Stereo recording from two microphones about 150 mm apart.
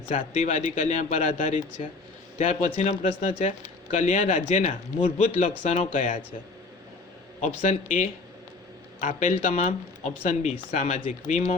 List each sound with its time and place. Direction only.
0.1 s speech: 50° left (ahead or behind)
7.4 s speech: 50° left (ahead or behind)